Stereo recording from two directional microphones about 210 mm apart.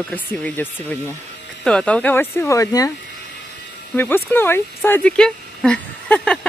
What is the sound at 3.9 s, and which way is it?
Speech, 10° left (ahead or behind).